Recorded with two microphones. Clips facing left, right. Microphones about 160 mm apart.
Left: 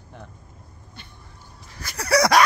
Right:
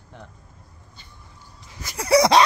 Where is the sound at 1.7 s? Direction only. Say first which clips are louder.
Right 3 dB; 20° right (ahead or behind).